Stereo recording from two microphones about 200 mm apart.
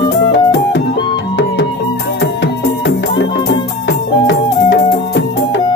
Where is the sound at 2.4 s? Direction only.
65° left (ahead or behind).